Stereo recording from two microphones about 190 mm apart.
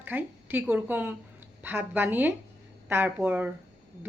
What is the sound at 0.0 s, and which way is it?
A woman's voice, 10° right (ahead or behind).